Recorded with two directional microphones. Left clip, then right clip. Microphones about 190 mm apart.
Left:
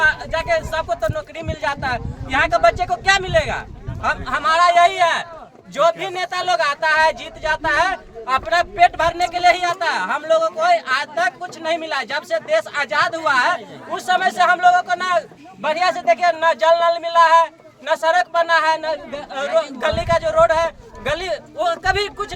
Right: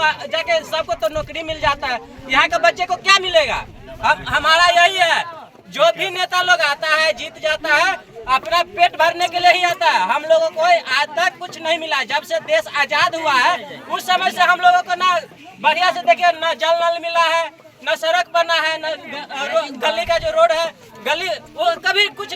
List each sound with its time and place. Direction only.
0.0 s a man's voice: 25° left (ahead or behind)
5.7 s a man's voice: 45° left (ahead or behind); by 22.3 s 20° left (ahead or behind)